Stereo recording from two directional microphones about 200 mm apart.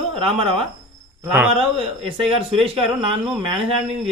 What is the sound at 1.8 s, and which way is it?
A man's voice, 25° right (ahead or behind).